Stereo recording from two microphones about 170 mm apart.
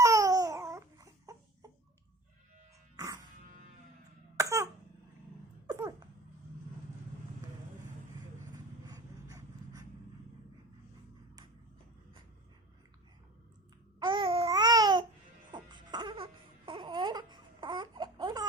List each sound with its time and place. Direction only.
0.0 s babbling: 20° right (ahead or behind)
2.9 s music: 20° right (ahead or behind)
4.4 s cough: 15° right (ahead or behind)
8.5 s a sound: 20° right (ahead or behind)
14.0 s babbling: 30° right (ahead or behind)
15.5 s baby cry: 25° right (ahead or behind)